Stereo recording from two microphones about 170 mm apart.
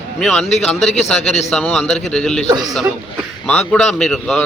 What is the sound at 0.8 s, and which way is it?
Speech, 40° left (ahead or behind).